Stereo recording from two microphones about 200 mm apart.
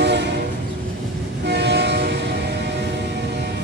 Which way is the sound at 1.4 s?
55° right (ahead or behind).